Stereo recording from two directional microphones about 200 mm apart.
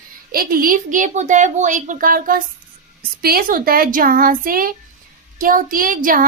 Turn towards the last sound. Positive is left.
turn(degrees=-45)  # may be behind; listen again after turning